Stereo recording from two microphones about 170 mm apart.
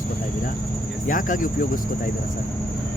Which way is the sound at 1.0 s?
50° left (ahead or behind).